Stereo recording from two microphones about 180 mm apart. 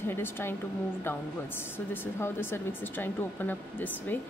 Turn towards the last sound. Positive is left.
turn(degrees=10)  # may be behind; listen again after turning